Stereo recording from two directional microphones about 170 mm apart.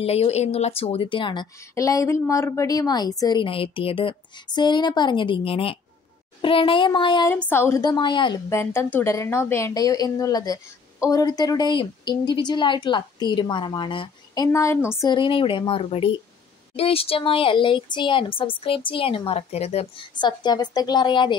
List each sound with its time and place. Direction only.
0.0 s a woman's voice: 35° left (ahead or behind)
7.2 s a woman's voice: 10° left (ahead or behind)
8.5 s a woman's voice: 15° left (ahead or behind); by 19.9 s 40° left (ahead or behind)
20.2 s a woman's voice: 25° left (ahead or behind)